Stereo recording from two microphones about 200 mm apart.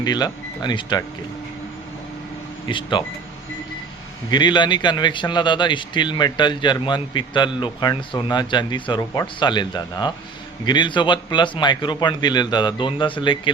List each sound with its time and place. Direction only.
0.0 s speech: 20° left (ahead or behind)
2.6 s speech: 25° left (ahead or behind)
4.3 s speech: 20° left (ahead or behind)